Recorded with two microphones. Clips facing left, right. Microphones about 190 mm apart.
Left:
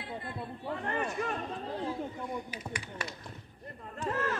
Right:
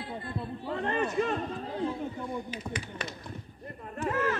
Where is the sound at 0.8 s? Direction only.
25° right (ahead or behind).